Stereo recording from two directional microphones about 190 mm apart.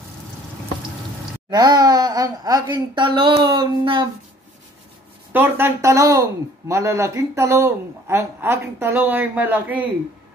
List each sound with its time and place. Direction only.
1.5 s speech: 20° right (ahead or behind)
5.3 s a woman's voice: 10° right (ahead or behind)